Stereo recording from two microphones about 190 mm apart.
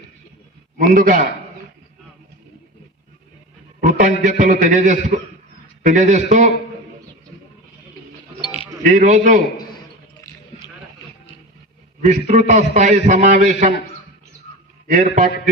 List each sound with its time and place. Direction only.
0.8 s a man's voice: 45° right (ahead or behind)
3.8 s a sound: 40° right (ahead or behind)
4.2 s a man's voice: 40° right (ahead or behind)
8.4 s music: 25° left (ahead or behind)
8.9 s a man's voice: 40° right (ahead or behind)
12.0 s a man's voice: 40° right (ahead or behind)
14.8 s a man's voice: 40° right (ahead or behind)